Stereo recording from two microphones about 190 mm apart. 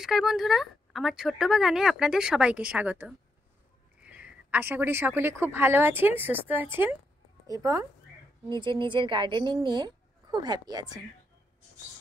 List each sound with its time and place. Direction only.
0.0 s speech: centre (ahead or behind); by 11.0 s 20° right (ahead or behind)